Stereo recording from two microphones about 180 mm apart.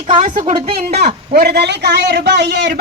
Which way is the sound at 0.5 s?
35° right (ahead or behind).